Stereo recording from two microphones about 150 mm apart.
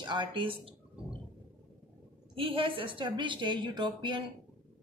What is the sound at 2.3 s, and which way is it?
A woman's voice, 35° right (ahead or behind).